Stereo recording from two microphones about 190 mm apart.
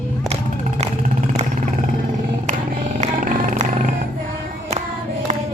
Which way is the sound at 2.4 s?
40° right (ahead or behind).